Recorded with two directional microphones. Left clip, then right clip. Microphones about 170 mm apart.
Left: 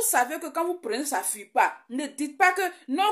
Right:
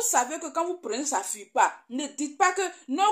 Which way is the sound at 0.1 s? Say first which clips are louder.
Left 2 dB; 20° left (ahead or behind).